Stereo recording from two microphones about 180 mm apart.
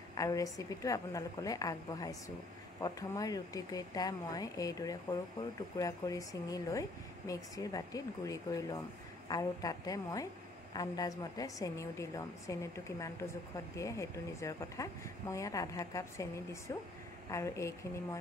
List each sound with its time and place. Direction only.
0.1 s speech: 20° left (ahead or behind)